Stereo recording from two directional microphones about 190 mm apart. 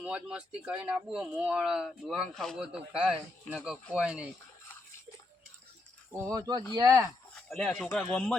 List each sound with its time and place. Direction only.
0.0 s speech: 5° right (ahead or behind)
6.1 s speech: 15° right (ahead or behind)
7.5 s speech: 5° left (ahead or behind)